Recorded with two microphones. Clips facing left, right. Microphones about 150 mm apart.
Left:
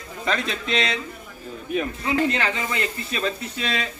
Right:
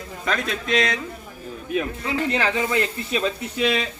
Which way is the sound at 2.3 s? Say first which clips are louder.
Right 3 dB; 15° right (ahead or behind).